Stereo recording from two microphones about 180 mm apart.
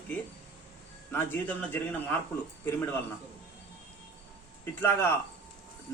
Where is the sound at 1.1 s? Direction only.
10° left (ahead or behind).